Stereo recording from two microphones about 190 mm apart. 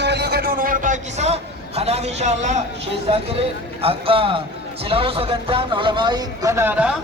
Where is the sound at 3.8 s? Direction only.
30° right (ahead or behind); by 6.9 s 10° right (ahead or behind).